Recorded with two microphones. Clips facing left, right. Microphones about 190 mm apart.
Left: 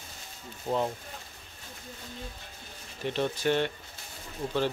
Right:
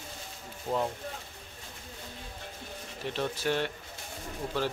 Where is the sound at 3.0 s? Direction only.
Centre (ahead or behind).